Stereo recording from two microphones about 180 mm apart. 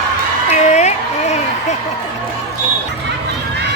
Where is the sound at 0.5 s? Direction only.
40° left (ahead or behind).